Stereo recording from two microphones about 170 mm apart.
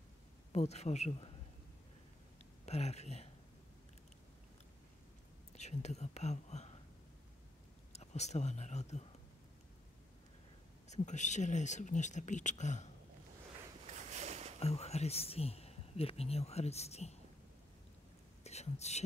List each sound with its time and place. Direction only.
0.5 s speech: 40° left (ahead or behind)
2.6 s speech: 40° left (ahead or behind)
5.6 s speech: 40° left (ahead or behind)
7.9 s speech: 40° left (ahead or behind)
10.9 s speech: 45° left (ahead or behind)
13.8 s a sound: 45° right (ahead or behind)
14.6 s speech: 35° left (ahead or behind)
18.4 s a sound: 40° left (ahead or behind)